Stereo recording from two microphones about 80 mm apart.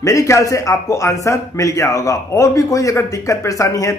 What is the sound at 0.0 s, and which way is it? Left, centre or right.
A man's voice, left.